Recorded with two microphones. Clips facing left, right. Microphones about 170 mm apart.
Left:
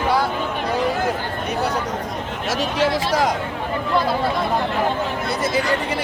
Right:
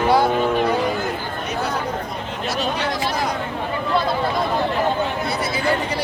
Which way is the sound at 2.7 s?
90° left.